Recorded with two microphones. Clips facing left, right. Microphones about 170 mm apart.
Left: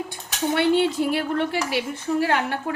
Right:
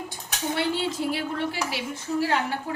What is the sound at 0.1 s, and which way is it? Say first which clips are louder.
Speech: left 5 dB; 60° left (ahead or behind).